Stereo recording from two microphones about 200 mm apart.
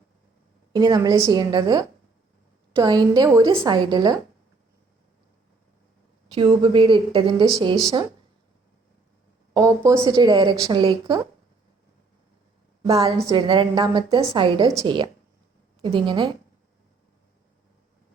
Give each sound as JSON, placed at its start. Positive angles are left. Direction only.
{"t": 0.7, "sound": "a woman's voice", "side_deg": -20}
{"t": 6.4, "sound": "a woman's voice", "side_deg": -25}
{"t": 9.6, "sound": "a woman's voice", "side_deg": -15}
{"t": 12.9, "sound": "a woman's voice", "side_deg": -20}